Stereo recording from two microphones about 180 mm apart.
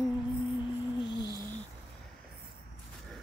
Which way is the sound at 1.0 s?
25° left (ahead or behind).